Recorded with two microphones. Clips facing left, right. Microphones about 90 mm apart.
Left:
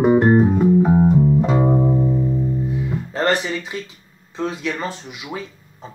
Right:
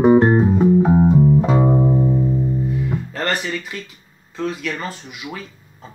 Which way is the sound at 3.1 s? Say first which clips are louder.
Left 6 dB; 25° left (ahead or behind).